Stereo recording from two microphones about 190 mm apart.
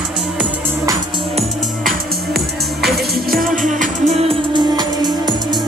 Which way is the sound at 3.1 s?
50° right (ahead or behind).